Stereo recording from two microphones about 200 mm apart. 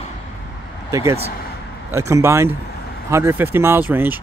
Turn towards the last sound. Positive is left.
turn(degrees=-10)  # may be behind; listen again after turning